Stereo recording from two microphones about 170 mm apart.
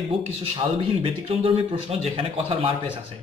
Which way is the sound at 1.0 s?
35° right (ahead or behind).